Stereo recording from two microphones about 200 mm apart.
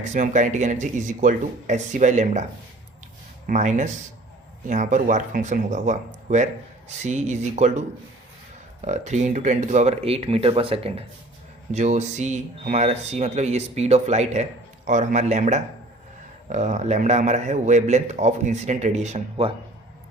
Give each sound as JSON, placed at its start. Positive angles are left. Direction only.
{"t": 0.0, "sound": "speech", "side_deg": -35}